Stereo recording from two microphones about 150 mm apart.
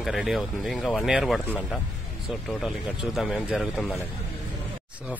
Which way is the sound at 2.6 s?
5° right (ahead or behind).